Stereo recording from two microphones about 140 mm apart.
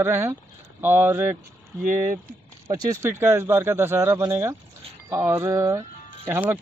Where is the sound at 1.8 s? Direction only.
65° right (ahead or behind).